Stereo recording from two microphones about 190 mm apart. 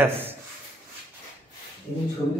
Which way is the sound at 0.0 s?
10° right (ahead or behind).